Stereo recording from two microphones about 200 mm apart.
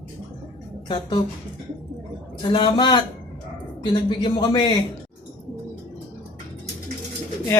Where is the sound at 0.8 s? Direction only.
25° left (ahead or behind).